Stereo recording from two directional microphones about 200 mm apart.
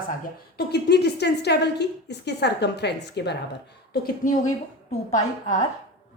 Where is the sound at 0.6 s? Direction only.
55° left (ahead or behind).